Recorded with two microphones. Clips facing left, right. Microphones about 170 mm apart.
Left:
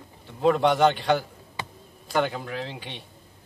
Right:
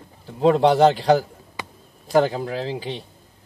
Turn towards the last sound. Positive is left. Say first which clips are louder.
# right 7 dB
turn(degrees=-35)  # may be behind; listen again after turning